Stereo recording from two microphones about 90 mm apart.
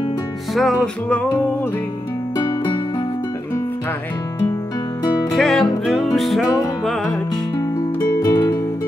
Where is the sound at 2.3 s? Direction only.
50° left (ahead or behind).